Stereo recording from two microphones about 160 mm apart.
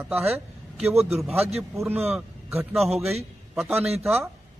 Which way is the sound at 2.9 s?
Centre (ahead or behind).